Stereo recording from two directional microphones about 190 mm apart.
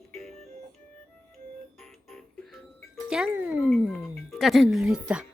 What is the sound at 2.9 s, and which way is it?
Speech, 5° right (ahead or behind).